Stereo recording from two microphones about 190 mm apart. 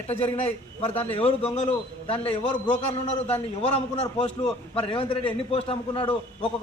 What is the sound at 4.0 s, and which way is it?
A man's voice, 30° left (ahead or behind).